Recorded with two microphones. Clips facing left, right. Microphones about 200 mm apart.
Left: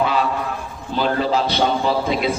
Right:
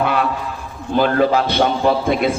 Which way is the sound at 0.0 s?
60° right (ahead or behind).